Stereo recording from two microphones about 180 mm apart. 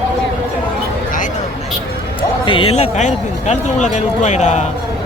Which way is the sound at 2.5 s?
30° left (ahead or behind).